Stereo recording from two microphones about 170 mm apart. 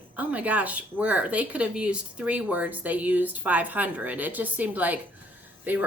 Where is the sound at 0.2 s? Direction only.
10° right (ahead or behind).